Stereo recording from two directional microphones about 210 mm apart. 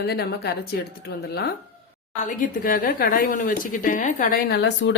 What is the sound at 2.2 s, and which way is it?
A woman's voice, 40° left (ahead or behind).